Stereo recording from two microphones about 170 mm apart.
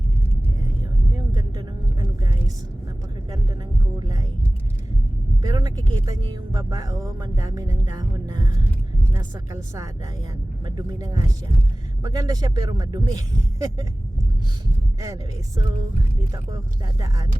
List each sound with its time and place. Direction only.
1.1 s vehicle: 20° right (ahead or behind)
5.4 s speech: 20° right (ahead or behind)
15.0 s speech: 20° right (ahead or behind)